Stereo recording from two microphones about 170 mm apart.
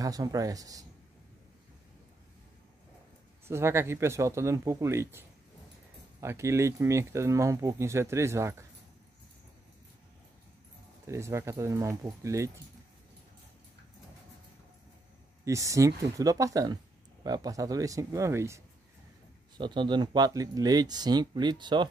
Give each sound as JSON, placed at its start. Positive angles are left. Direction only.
{"t": 0.0, "sound": "speech", "side_deg": -20}
{"t": 3.4, "sound": "speech", "side_deg": -15}
{"t": 6.2, "sound": "speech", "side_deg": -15}
{"t": 11.1, "sound": "speech", "side_deg": -15}
{"t": 15.4, "sound": "speech", "side_deg": -20}
{"t": 19.5, "sound": "speech", "side_deg": -30}